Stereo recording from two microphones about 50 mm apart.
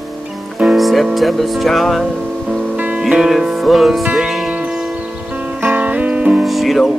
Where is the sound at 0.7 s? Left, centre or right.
Centre.